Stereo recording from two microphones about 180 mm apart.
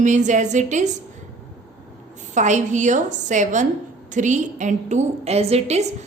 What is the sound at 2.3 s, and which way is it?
A woman's voice, 40° right (ahead or behind).